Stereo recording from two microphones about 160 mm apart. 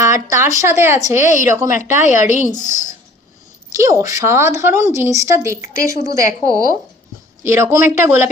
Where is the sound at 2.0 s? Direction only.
50° left (ahead or behind).